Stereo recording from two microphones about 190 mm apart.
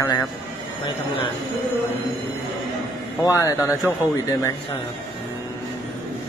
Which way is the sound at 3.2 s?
15° left (ahead or behind).